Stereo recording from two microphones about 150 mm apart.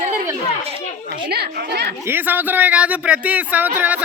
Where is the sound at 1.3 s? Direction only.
90° right.